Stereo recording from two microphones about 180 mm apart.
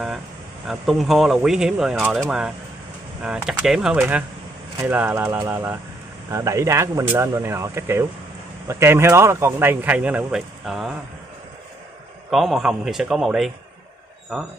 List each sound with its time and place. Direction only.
0.7 s speech: centre (ahead or behind)
12.3 s speech: centre (ahead or behind)